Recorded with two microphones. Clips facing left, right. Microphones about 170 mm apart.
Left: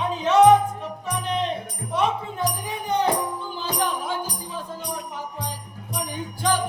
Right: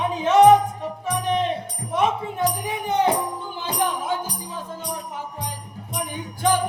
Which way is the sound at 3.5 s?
20° right (ahead or behind).